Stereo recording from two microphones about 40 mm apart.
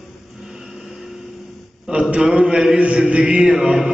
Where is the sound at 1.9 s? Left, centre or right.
Right.